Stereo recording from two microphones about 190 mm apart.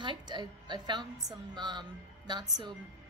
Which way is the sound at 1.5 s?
25° right (ahead or behind).